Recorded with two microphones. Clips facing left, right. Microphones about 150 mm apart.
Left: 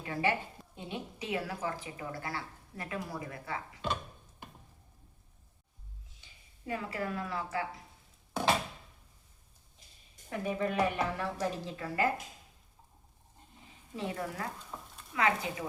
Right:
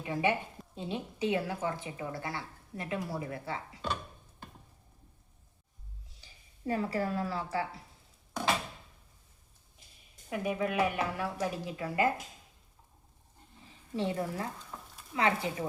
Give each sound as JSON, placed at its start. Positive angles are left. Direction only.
{"t": 0.0, "sound": "speech", "side_deg": -20}
{"t": 6.2, "sound": "speech", "side_deg": -35}
{"t": 10.2, "sound": "a woman's voice", "side_deg": -10}
{"t": 13.9, "sound": "speech", "side_deg": -25}
{"t": 14.7, "sound": "a sound", "side_deg": 5}
{"t": 15.1, "sound": "speech", "side_deg": -30}